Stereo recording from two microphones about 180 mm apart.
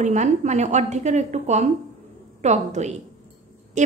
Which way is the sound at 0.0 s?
40° right (ahead or behind).